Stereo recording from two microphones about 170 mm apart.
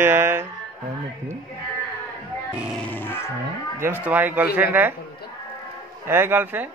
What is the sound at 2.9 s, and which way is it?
Music, 15° left (ahead or behind).